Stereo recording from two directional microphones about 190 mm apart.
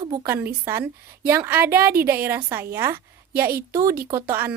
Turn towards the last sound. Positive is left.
turn(degrees=-10)  # may be behind; listen again after turning